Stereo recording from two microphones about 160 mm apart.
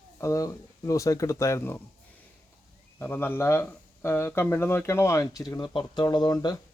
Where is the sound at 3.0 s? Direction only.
10° left (ahead or behind).